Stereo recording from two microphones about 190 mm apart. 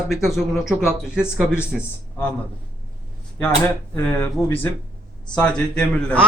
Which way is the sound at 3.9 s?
15° left (ahead or behind).